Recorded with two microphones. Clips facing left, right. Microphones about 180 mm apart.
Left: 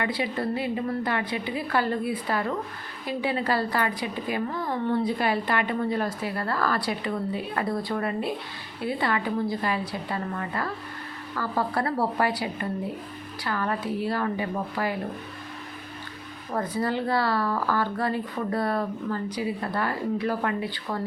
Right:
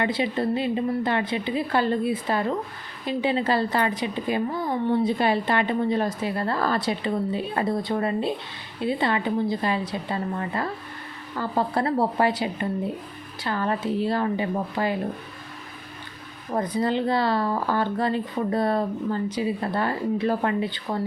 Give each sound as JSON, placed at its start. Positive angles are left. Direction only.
{"t": 0.0, "sound": "a woman's voice", "side_deg": -25}
{"t": 16.5, "sound": "a woman's voice", "side_deg": -20}